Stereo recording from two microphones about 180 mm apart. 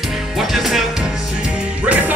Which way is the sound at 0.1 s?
Centre (ahead or behind).